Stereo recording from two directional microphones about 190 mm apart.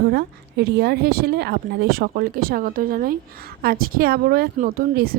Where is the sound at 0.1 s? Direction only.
60° right (ahead or behind).